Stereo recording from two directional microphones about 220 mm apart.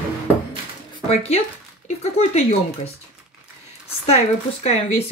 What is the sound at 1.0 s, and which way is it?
A woman's voice, 30° left (ahead or behind).